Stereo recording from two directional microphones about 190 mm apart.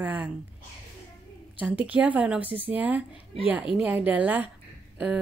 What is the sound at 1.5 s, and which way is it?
A woman's voice, 5° right (ahead or behind).